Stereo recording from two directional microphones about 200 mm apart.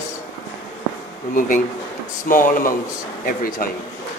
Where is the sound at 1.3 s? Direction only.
40° left (ahead or behind).